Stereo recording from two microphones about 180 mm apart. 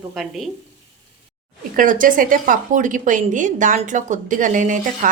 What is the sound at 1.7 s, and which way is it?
A woman's voice, 50° right (ahead or behind).